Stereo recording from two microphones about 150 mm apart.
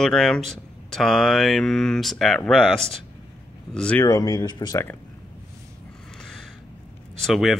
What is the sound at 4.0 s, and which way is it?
Speech, 25° left (ahead or behind).